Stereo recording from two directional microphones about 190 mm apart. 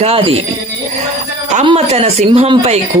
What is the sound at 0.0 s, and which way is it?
Speech, 30° right (ahead or behind).